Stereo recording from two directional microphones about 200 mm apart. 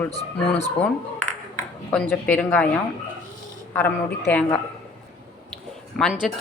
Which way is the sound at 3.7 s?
10° left (ahead or behind).